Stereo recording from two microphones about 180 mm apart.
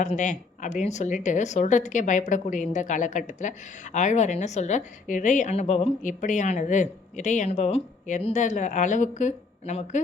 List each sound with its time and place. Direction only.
0.0 s a woman's voice: 45° left (ahead or behind)